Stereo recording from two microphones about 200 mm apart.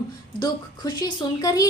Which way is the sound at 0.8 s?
20° left (ahead or behind).